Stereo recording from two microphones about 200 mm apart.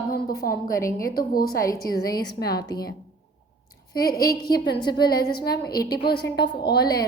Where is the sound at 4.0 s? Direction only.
50° left (ahead or behind).